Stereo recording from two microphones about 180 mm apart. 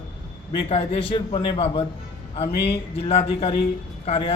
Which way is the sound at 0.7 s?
30° left (ahead or behind).